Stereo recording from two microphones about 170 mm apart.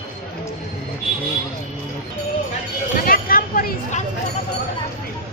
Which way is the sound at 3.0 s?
60° left (ahead or behind).